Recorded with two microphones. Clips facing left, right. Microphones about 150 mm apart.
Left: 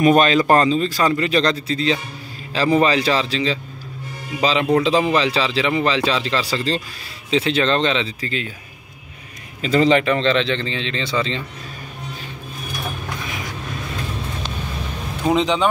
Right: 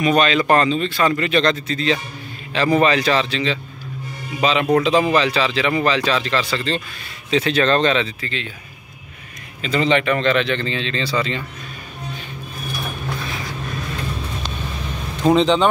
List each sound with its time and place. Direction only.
0.0 s a man's voice: 45° left (ahead or behind); by 8.1 s 20° left (ahead or behind)
8.2 s speech: 40° left (ahead or behind)
9.6 s a man's voice: 35° left (ahead or behind)
15.2 s a man's voice: 10° left (ahead or behind)